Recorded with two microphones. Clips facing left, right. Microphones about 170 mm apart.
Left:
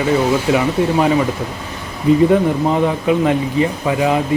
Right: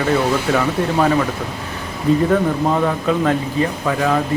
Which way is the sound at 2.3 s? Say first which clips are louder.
Left 2 dB; 15° left (ahead or behind).